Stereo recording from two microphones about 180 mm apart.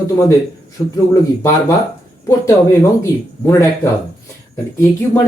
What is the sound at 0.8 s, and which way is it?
Speech, centre (ahead or behind).